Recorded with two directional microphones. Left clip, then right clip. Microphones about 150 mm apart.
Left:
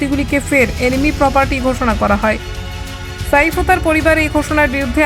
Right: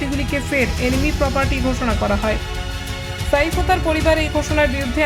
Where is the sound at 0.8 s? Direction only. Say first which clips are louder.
Left 6 dB; 45° left (ahead or behind).